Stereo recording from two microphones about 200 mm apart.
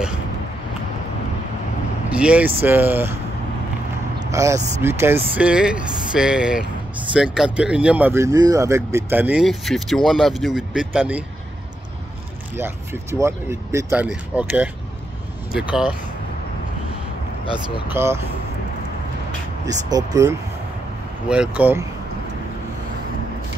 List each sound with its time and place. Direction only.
2.1 s speech: 5° right (ahead or behind)
4.3 s speech: 15° right (ahead or behind)
12.5 s speech: 10° right (ahead or behind)
17.9 s speech: 15° right (ahead or behind)
19.9 s speech: 20° right (ahead or behind)
21.3 s speech: 5° right (ahead or behind)